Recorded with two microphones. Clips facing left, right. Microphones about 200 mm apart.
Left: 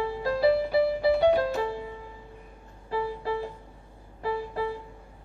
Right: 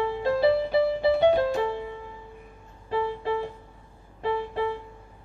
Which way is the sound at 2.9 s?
25° right (ahead or behind).